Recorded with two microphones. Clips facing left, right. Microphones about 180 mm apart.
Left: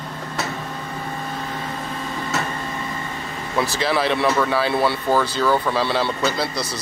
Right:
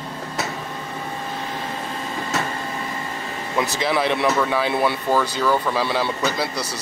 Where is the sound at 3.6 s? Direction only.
20° right (ahead or behind).